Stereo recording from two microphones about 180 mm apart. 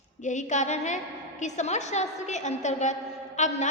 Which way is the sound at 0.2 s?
45° left (ahead or behind).